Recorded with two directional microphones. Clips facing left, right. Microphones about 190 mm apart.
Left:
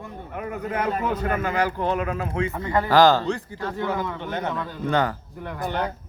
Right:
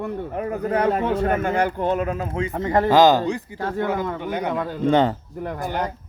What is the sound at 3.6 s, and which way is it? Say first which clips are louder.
Speech: right 3 dB; 50° right (ahead or behind).